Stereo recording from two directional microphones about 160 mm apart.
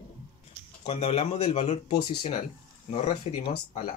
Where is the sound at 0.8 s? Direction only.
45° left (ahead or behind).